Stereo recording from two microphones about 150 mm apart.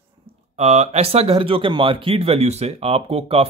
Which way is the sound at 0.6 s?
45° right (ahead or behind).